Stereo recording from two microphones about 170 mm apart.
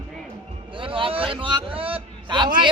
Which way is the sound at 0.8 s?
30° right (ahead or behind).